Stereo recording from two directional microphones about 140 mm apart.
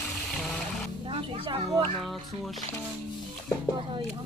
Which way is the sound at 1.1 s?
40° right (ahead or behind).